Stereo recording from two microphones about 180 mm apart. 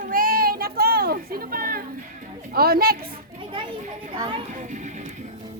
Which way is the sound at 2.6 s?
55° right (ahead or behind).